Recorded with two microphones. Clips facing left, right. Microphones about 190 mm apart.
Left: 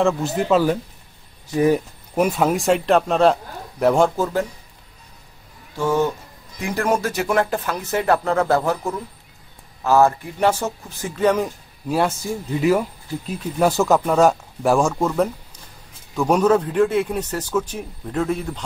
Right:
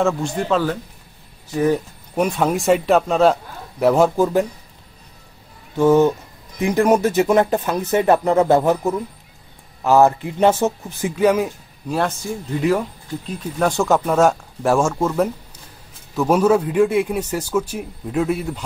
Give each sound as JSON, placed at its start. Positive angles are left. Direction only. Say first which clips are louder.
{"t": 0.0, "sound": "speech", "louder": "even", "side_deg": 5}
{"t": 4.2, "sound": "speech", "louder": "right 5 dB", "side_deg": -15}
{"t": 5.8, "sound": "speech", "louder": "right 6 dB", "side_deg": -20}
{"t": 12.5, "sound": "speech", "louder": "left 1 dB", "side_deg": 5}